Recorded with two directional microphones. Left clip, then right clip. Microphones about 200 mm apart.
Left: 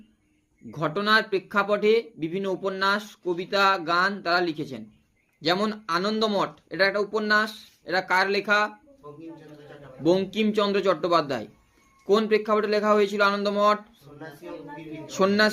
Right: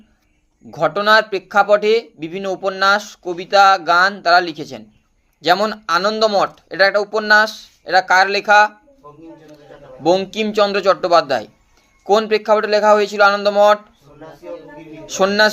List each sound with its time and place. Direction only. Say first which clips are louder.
0.7 s speech: right 9 dB; 15° left (ahead or behind)
10.0 s speech: right 7 dB; 15° left (ahead or behind)
15.0 s speech: right 8 dB; 15° left (ahead or behind)